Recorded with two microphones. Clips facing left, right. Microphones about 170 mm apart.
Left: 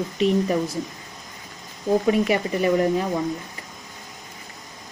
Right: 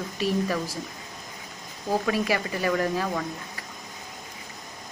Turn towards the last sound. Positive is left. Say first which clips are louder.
# left 5 dB
turn(degrees=20)  # may be behind; listen again after turning